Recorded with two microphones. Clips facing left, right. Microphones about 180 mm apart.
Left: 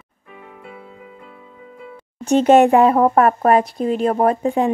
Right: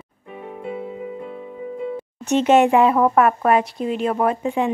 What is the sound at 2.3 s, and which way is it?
Speech, 40° left (ahead or behind).